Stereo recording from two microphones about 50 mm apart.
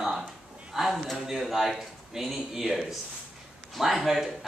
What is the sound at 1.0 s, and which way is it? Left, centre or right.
Speech, centre.